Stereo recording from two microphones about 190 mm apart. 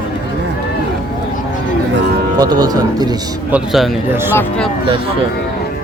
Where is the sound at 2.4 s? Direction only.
20° right (ahead or behind).